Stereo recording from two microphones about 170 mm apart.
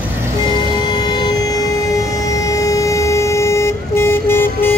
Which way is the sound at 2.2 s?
20° left (ahead or behind).